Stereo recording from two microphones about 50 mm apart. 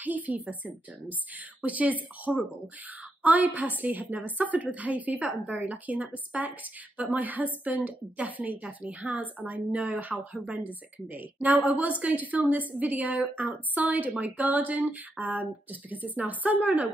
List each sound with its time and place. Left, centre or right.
0.0 s a woman's voice: right
2.3 s speech: centre
3.2 s a woman's voice: right